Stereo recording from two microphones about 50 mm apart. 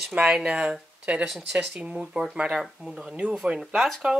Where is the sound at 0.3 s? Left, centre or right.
Centre.